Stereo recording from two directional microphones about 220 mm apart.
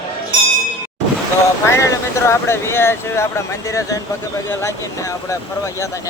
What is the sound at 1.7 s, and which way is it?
Speech, 15° left (ahead or behind).